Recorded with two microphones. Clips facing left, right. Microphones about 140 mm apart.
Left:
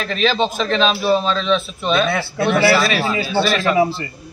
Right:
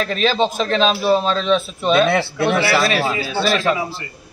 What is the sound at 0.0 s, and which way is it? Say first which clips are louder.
Speech: even; 40° right (ahead or behind).